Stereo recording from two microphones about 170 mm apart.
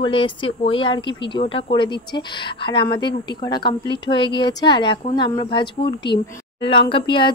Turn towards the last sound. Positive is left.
turn(degrees=30)  # may be behind; listen again after turning